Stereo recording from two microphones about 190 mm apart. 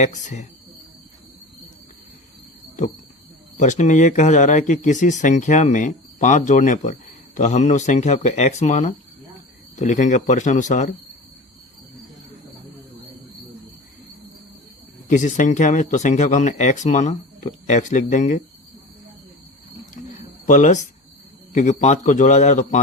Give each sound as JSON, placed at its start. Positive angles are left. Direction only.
{"t": 0.0, "sound": "speech", "side_deg": 40}
{"t": 3.6, "sound": "speech", "side_deg": 40}
{"t": 15.0, "sound": "speech", "side_deg": 40}
{"t": 20.0, "sound": "a sound", "side_deg": 40}
{"t": 20.5, "sound": "speech", "side_deg": 40}